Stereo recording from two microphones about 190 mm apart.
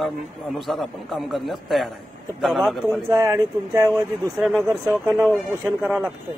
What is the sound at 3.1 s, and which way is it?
Speech, 15° right (ahead or behind).